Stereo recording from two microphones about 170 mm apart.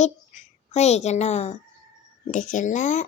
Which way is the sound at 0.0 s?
40° left (ahead or behind).